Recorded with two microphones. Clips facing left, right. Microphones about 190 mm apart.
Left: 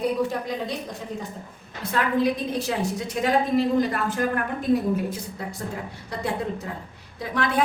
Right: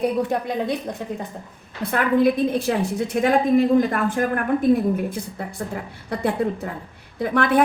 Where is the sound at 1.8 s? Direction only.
55° right (ahead or behind).